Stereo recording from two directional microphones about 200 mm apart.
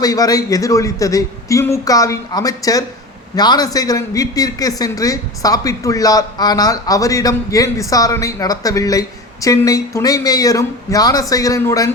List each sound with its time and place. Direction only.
0.0 s a man's voice: 20° left (ahead or behind)